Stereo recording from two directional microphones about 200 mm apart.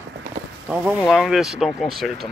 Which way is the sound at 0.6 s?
5° right (ahead or behind).